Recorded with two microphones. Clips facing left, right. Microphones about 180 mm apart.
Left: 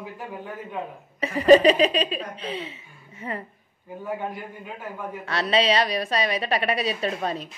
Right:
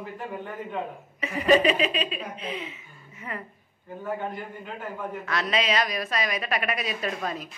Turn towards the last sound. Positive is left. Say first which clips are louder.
# left 3 dB
turn(degrees=30)  # may be behind; listen again after turning